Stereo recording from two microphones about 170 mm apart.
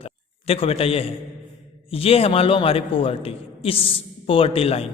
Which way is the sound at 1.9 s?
35° left (ahead or behind).